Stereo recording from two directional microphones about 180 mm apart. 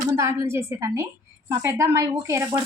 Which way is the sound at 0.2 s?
15° right (ahead or behind).